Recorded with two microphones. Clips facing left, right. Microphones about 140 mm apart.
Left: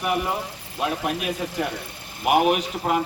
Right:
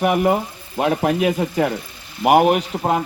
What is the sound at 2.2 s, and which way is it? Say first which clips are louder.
Speech: right 5 dB; 45° right (ahead or behind).